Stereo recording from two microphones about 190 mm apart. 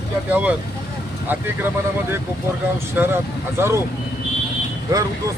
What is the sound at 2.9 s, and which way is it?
Speech, 10° right (ahead or behind).